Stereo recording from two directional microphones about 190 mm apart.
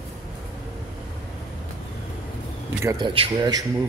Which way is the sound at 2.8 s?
25° right (ahead or behind).